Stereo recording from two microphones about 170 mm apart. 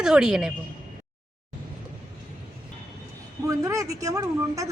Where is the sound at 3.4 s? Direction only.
20° right (ahead or behind).